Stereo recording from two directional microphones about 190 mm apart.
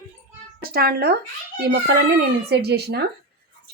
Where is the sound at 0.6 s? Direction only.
55° right (ahead or behind).